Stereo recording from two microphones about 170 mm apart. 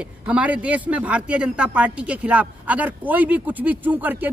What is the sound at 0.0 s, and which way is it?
A man's voice, 5° right (ahead or behind).